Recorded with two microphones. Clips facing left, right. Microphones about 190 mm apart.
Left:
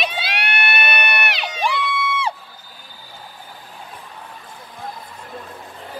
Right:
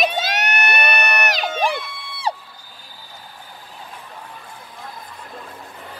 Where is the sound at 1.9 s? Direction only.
90° left.